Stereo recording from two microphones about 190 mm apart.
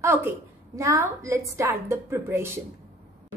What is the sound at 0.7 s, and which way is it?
A woman's voice, 15° right (ahead or behind).